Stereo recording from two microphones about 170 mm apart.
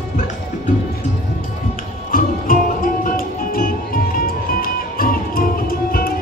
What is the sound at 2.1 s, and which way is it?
Music, 55° left (ahead or behind).